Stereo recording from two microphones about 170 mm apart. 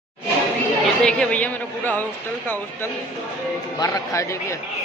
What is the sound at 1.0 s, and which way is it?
A man's voice, 5° left (ahead or behind).